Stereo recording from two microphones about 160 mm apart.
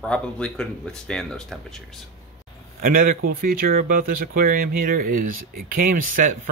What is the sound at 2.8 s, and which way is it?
Speech, 60° right (ahead or behind).